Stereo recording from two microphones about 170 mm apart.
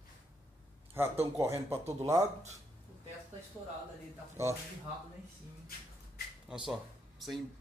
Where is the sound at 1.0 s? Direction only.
15° right (ahead or behind).